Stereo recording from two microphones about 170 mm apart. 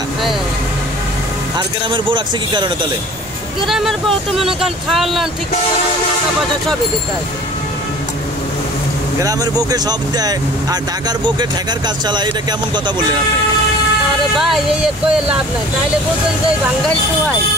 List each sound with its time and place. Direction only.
1.9 s speech: 30° right (ahead or behind)
3.6 s speech: centre (ahead or behind)
9.2 s speech: 20° right (ahead or behind)
14.3 s speech: centre (ahead or behind)